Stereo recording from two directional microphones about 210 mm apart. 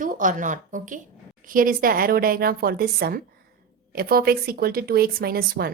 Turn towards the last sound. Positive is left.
turn(degrees=-45)  # may be behind; listen again after turning